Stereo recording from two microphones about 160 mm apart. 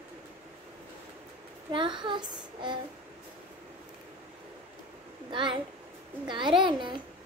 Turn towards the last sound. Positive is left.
turn(degrees=-30)  # may be behind; listen again after turning